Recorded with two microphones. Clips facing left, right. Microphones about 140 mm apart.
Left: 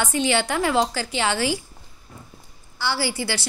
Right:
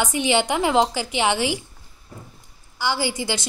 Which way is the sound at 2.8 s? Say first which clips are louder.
Right 1 dB; 15° right (ahead or behind).